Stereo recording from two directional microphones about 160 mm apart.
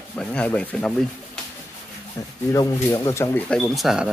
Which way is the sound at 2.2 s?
20° left (ahead or behind).